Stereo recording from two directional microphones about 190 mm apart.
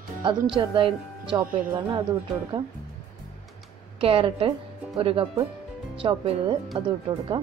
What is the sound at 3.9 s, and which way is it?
A woman's voice, 30° right (ahead or behind).